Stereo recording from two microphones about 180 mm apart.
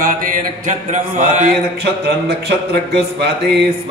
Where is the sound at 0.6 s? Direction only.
40° right (ahead or behind).